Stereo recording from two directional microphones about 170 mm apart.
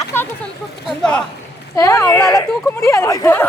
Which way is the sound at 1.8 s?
20° left (ahead or behind).